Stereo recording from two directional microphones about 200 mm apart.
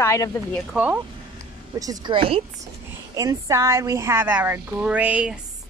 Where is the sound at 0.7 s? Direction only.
5° right (ahead or behind).